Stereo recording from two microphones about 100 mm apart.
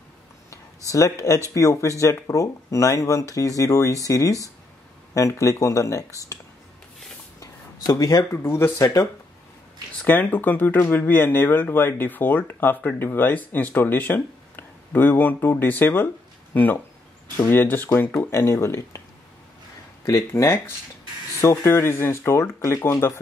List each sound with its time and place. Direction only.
0.8 s speech: 35° left (ahead or behind)
7.3 s a sound: 35° left (ahead or behind)
8.3 s speech: 25° left (ahead or behind)
10.0 s speech: 15° left (ahead or behind)
20.1 s speech: 30° left (ahead or behind)